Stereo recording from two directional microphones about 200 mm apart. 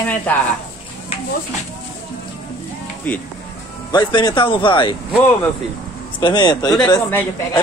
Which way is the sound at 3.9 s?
20° left (ahead or behind).